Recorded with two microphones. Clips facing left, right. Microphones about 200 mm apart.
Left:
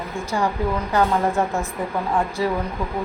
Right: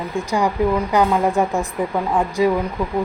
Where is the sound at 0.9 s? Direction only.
15° right (ahead or behind).